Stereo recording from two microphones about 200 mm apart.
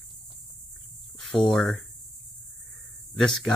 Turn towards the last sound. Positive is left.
turn(degrees=0)  # may be behind; listen again after turning